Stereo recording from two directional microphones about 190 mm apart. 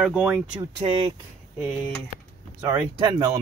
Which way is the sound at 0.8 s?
30° right (ahead or behind).